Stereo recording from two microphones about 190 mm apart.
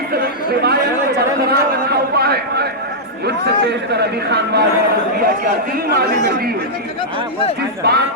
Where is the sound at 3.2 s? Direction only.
60° right (ahead or behind).